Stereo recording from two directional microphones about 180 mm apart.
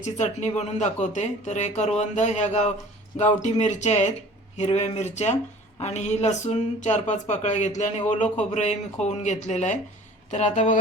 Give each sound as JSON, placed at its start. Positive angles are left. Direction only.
{"t": 0.0, "sound": "speech", "side_deg": 40}